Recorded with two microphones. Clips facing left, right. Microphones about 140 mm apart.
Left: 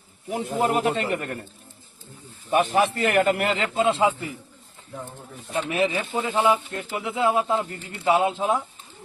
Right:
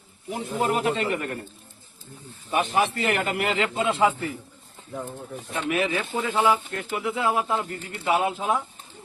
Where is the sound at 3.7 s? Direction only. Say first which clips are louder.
Left 2 dB; 25° left (ahead or behind).